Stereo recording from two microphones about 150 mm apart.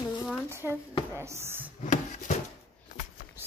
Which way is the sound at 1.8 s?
60° left (ahead or behind).